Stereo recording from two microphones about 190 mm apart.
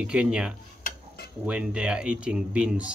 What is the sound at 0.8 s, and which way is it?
Dishes, 55° left (ahead or behind).